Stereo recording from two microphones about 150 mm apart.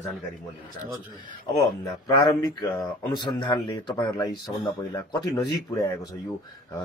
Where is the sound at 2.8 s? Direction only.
30° left (ahead or behind).